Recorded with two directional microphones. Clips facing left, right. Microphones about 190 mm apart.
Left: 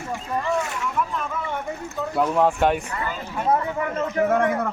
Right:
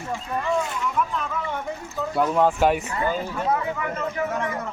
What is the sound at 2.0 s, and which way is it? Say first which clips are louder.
Speech: even; centre (ahead or behind).